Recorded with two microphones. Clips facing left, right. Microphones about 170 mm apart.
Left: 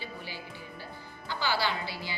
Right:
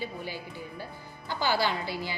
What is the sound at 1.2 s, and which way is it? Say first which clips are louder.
Speech: right 3 dB; 45° right (ahead or behind).